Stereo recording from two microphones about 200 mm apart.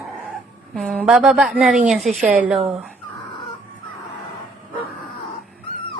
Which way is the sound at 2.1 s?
40° right (ahead or behind).